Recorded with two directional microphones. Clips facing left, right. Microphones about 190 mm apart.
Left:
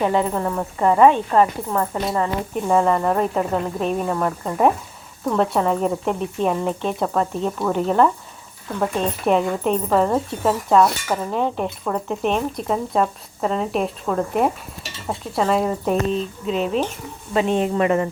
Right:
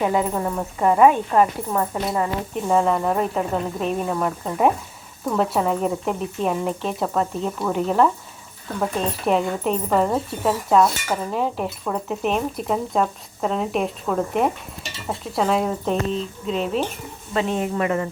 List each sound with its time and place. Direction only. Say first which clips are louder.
0.0 s speech: left 1 dB; 5° right (ahead or behind)
9.2 s speech: left 2 dB; centre (ahead or behind)
17.3 s speech: left 4 dB; 25° left (ahead or behind)